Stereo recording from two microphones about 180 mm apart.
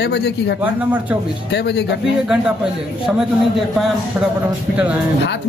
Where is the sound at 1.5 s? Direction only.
70° left (ahead or behind).